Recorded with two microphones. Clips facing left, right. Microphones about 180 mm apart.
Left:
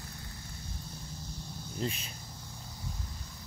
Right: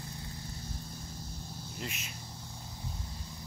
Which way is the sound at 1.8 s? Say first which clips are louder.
Left 7 dB; 30° left (ahead or behind).